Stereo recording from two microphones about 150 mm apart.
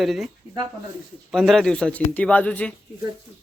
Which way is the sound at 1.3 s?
Centre (ahead or behind).